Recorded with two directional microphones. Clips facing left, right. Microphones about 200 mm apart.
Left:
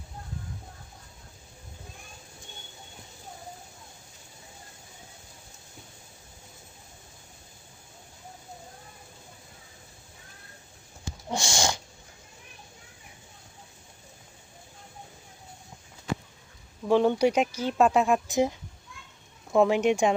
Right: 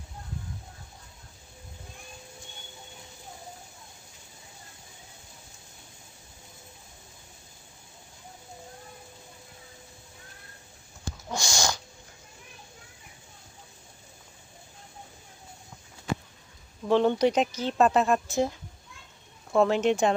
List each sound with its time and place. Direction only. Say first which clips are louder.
11.3 s sneeze: left 2 dB; 25° left (ahead or behind)
16.9 s speech: even; 10° left (ahead or behind)
19.5 s speech: left 1 dB; 10° left (ahead or behind)